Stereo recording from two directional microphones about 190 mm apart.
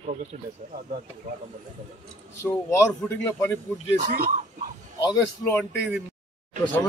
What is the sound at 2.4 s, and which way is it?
A man's voice, 15° left (ahead or behind).